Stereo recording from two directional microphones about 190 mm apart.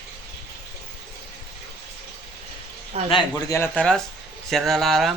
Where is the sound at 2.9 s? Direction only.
35° right (ahead or behind).